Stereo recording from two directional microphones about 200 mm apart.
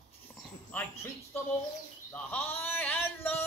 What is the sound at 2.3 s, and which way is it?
Speech, 10° left (ahead or behind).